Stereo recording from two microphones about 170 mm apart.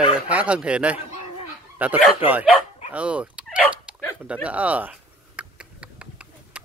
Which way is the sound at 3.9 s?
5° right (ahead or behind).